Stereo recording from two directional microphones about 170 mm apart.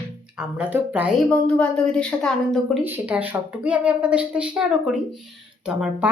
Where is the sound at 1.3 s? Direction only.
5° left (ahead or behind).